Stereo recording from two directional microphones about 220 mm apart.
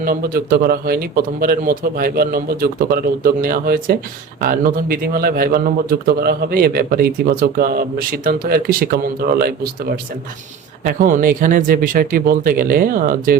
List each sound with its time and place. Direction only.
0.0 s a man's voice: 40° right (ahead or behind)
10.8 s a man's voice: 40° right (ahead or behind)